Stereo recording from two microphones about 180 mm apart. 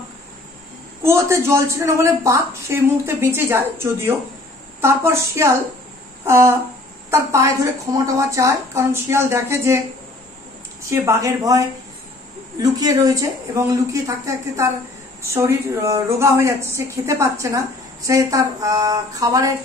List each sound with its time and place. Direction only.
1.0 s speech: 15° right (ahead or behind)
10.9 s speech: 15° right (ahead or behind)